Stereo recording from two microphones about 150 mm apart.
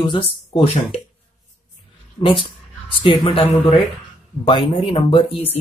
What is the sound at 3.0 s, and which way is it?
Speech, 35° left (ahead or behind).